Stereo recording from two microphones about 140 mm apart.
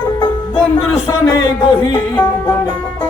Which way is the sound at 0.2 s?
40° left (ahead or behind).